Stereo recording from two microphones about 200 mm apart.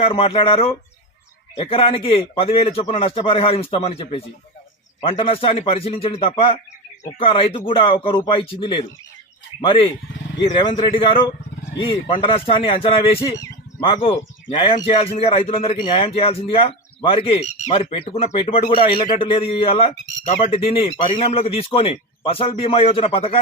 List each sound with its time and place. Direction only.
0.0 s a man's voice: 30° left (ahead or behind)
13.3 s a sound: 15° left (ahead or behind)
14.5 s a man's voice: 30° left (ahead or behind)